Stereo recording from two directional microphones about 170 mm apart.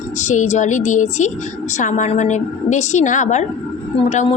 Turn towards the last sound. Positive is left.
turn(degrees=40)  # may be behind; listen again after turning